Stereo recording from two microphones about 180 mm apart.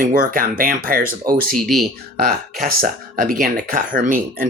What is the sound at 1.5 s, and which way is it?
Speech, centre (ahead or behind).